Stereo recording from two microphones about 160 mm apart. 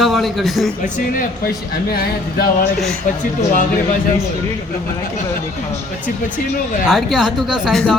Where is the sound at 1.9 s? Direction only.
75° left (ahead or behind).